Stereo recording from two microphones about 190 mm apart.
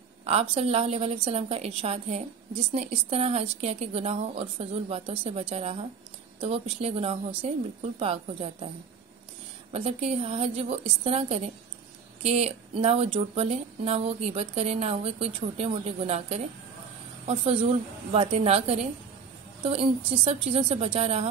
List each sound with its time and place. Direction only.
0.3 s a woman's voice: 30° right (ahead or behind)
9.7 s a woman's voice: 30° right (ahead or behind)